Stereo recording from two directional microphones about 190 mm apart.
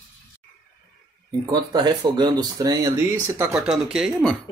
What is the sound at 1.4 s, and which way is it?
Speech, 20° right (ahead or behind).